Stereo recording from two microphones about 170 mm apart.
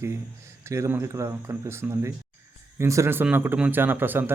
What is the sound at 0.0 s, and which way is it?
Speech, 15° right (ahead or behind).